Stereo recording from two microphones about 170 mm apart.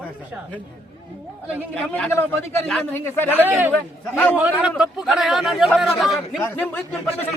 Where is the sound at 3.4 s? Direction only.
10° right (ahead or behind).